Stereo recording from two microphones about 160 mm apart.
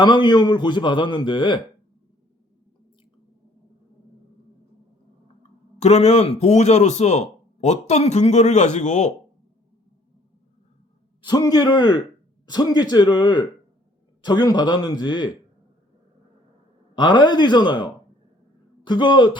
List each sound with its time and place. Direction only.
0.0 s a man's voice: 30° left (ahead or behind)
5.4 s speech: 40° left (ahead or behind)
11.2 s a man's voice: 25° left (ahead or behind)
16.9 s a man's voice: 30° left (ahead or behind)